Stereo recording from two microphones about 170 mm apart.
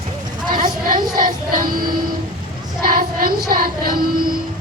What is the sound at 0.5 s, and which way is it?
Speech, 55° right (ahead or behind).